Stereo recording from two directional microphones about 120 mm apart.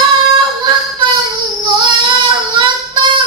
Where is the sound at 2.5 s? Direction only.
40° right (ahead or behind).